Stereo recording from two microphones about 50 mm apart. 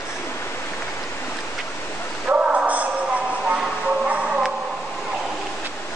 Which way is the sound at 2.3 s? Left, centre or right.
Right.